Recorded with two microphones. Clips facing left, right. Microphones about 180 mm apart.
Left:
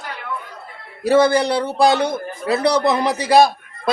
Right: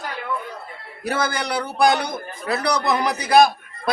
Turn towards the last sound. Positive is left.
turn(degrees=30)  # may be behind; listen again after turning